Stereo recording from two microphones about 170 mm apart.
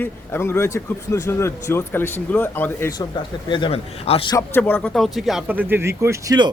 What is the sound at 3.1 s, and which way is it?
A man's voice, 30° left (ahead or behind).